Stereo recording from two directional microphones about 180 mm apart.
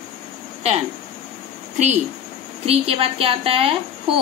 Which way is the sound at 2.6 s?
35° right (ahead or behind).